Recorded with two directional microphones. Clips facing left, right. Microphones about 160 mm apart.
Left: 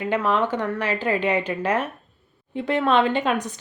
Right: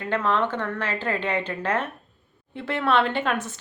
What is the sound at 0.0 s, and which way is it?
Speech, 10° left (ahead or behind).